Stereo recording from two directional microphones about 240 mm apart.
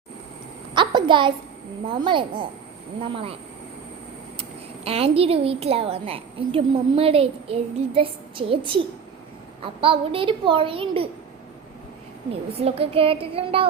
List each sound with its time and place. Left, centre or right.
0.7 s a sound: centre
1.9 s a woman's voice: centre
4.9 s a woman's voice: right
9.8 s a woman's voice: right
12.3 s a woman's voice: right